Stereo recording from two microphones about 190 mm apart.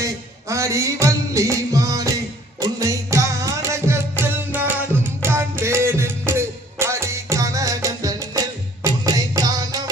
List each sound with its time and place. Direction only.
0.0 s music: 15° right (ahead or behind)